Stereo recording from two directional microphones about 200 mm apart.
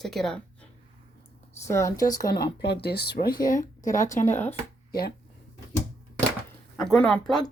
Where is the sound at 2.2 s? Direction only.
50° left (ahead or behind).